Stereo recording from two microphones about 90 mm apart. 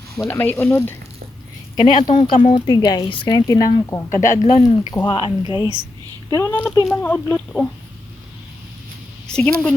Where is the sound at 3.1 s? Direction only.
70° left (ahead or behind).